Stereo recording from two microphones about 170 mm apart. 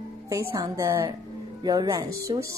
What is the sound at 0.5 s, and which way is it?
Speech, 20° right (ahead or behind).